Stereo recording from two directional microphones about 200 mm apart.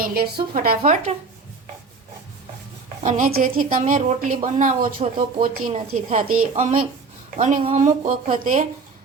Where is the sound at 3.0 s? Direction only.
40° right (ahead or behind).